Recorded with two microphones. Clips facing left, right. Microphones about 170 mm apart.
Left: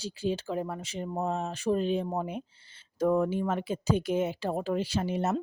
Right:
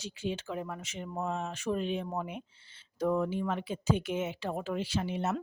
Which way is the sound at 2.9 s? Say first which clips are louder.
Left 4 dB; 45° left (ahead or behind).